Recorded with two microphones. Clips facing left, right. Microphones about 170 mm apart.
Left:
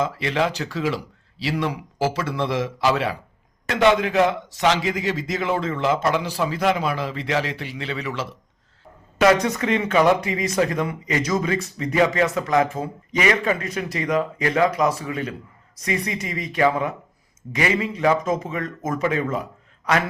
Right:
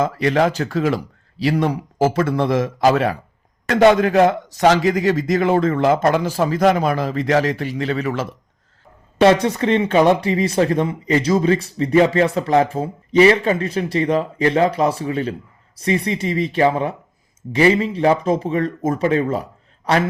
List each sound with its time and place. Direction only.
0.0 s a man's voice: 45° right (ahead or behind)
9.1 s speech: 30° right (ahead or behind)